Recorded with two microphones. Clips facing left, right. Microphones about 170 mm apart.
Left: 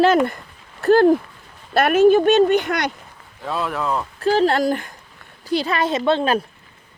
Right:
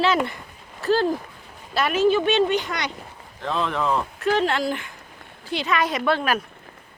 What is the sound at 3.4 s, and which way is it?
Speech, 5° left (ahead or behind).